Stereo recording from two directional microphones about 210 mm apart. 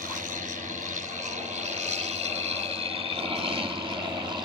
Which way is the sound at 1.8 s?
30° right (ahead or behind).